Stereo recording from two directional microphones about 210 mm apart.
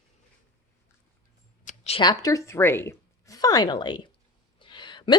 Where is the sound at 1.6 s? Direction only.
30° left (ahead or behind).